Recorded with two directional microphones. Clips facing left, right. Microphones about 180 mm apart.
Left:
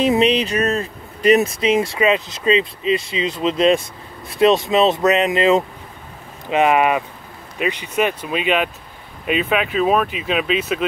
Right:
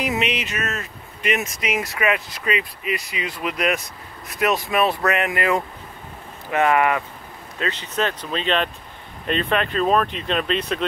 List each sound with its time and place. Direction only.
0.0 s speech: 30° left (ahead or behind); by 10.8 s 5° left (ahead or behind)